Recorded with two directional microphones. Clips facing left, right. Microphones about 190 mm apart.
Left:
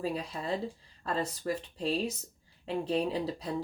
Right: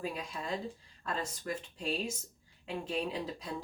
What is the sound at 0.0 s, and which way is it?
Speech, 35° left (ahead or behind).